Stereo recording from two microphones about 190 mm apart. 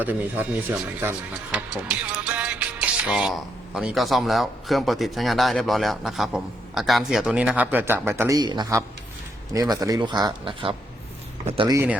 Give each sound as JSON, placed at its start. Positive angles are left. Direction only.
{"t": 0.0, "sound": "speech", "side_deg": -10}
{"t": 11.7, "sound": "speech", "side_deg": -15}